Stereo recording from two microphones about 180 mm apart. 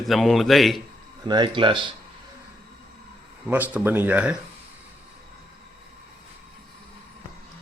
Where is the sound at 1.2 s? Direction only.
25° right (ahead or behind).